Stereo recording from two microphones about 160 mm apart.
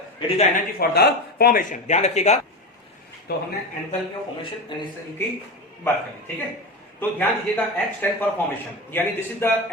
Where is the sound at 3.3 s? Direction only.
90° left.